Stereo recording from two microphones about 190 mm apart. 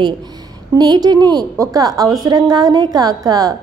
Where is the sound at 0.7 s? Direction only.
20° right (ahead or behind).